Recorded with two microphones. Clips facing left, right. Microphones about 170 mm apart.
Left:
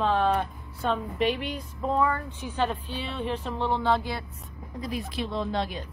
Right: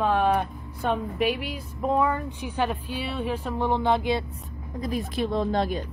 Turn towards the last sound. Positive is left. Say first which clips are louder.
# right 4 dB
turn(degrees=-45)  # may be behind; listen again after turning